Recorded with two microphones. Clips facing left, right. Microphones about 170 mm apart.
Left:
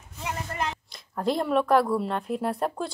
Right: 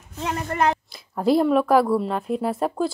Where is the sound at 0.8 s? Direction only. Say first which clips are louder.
Right 6 dB; 5° right (ahead or behind).